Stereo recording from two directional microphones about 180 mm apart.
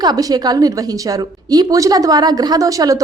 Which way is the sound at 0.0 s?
20° right (ahead or behind).